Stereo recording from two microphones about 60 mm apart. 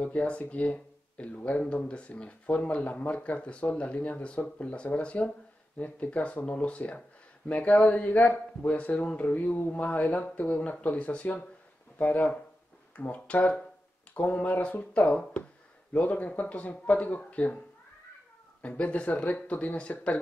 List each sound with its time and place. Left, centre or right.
0.0 s speech: left
18.6 s speech: left